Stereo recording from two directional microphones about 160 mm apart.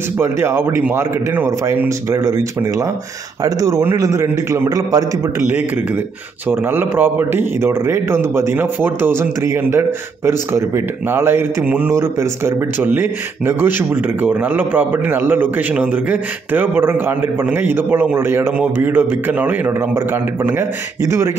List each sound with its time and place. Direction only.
0.2 s a man's voice: 15° right (ahead or behind)
6.5 s a man's voice: 15° right (ahead or behind)